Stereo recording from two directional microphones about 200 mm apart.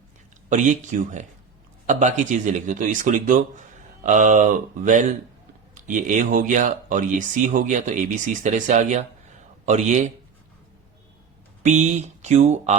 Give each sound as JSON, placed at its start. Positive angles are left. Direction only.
{"t": 0.5, "sound": "speech", "side_deg": -40}
{"t": 11.6, "sound": "speech", "side_deg": -35}